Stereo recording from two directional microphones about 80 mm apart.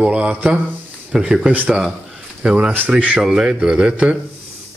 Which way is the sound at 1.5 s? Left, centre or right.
Right.